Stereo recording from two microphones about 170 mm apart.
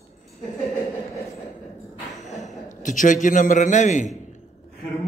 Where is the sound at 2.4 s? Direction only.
50° left (ahead or behind).